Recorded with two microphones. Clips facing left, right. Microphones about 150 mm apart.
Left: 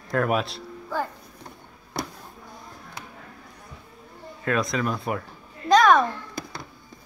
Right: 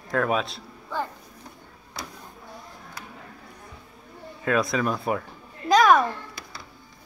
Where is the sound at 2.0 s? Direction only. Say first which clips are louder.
Left 7 dB; 60° left (ahead or behind).